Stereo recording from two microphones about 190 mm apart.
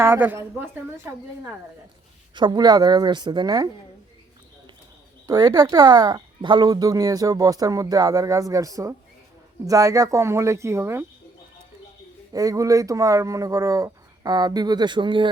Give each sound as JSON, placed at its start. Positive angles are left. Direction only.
{"t": 0.0, "sound": "speech", "side_deg": -10}
{"t": 2.3, "sound": "speech", "side_deg": -25}
{"t": 5.2, "sound": "speech", "side_deg": -20}
{"t": 12.3, "sound": "speech", "side_deg": -20}